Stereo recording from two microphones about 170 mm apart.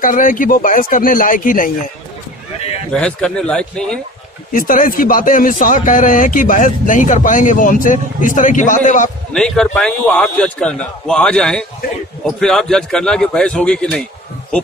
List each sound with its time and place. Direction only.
0.0 s speech: 50° left (ahead or behind)
2.9 s a man's voice: 5° left (ahead or behind)
4.5 s speech: 55° left (ahead or behind)
9.3 s a man's voice: 5° left (ahead or behind)